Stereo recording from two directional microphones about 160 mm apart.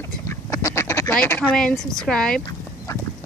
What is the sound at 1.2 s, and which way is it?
Speech, 10° left (ahead or behind).